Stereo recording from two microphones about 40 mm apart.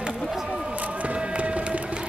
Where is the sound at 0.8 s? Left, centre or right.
Right.